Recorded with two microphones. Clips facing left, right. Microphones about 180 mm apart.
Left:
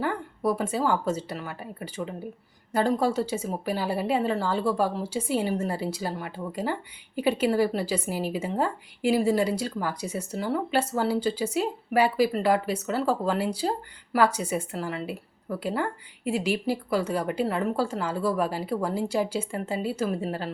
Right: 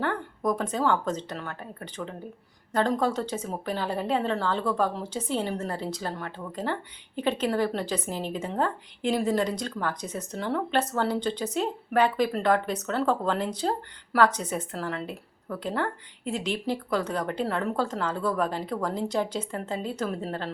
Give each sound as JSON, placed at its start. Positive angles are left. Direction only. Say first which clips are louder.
{"t": 0.0, "sound": "a woman's voice", "louder": "left 1 dB", "side_deg": 5}